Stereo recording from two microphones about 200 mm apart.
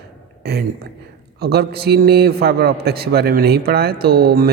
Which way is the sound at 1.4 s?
55° right (ahead or behind).